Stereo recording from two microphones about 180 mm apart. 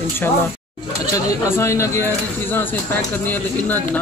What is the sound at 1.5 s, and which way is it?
Speech, 15° left (ahead or behind).